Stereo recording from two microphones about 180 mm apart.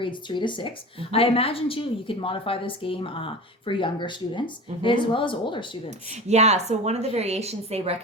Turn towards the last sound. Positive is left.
turn(degrees=-35)  # may be behind; listen again after turning